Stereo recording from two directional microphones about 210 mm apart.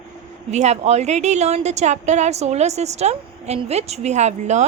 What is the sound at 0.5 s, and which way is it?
A woman's voice, 30° right (ahead or behind).